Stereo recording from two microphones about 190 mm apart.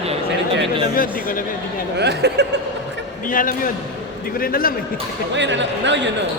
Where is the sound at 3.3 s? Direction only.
45° left (ahead or behind).